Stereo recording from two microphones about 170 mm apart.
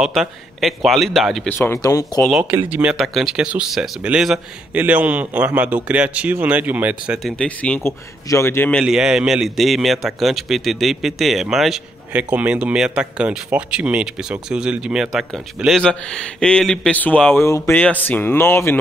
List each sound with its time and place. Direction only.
0.0 s speech: centre (ahead or behind)
1.5 s speech: 15° left (ahead or behind)
2.1 s speech: 5° left (ahead or behind)
2.5 s speech: 10° right (ahead or behind)
7.3 s speech: 5° left (ahead or behind)
8.8 s speech: 5° right (ahead or behind); by 18.8 s 15° left (ahead or behind)